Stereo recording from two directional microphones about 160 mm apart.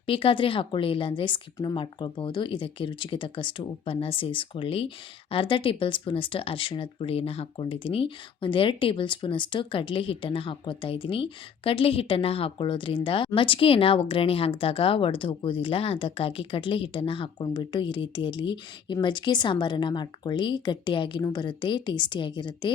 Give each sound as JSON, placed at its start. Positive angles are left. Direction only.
{"t": 0.0, "sound": "speech", "side_deg": 35}